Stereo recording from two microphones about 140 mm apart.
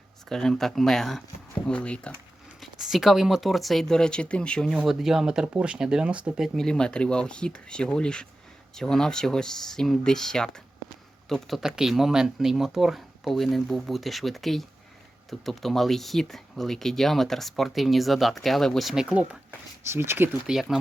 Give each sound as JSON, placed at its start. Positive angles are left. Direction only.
{"t": 0.3, "sound": "speech", "side_deg": 5}
{"t": 19.8, "sound": "speech", "side_deg": -15}
{"t": 20.5, "sound": "speech", "side_deg": 0}